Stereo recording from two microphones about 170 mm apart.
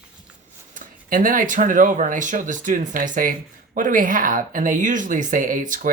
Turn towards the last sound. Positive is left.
turn(degrees=-50)  # may be behind; listen again after turning